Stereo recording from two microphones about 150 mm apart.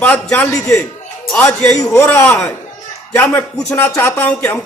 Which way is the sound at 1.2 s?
5° left (ahead or behind).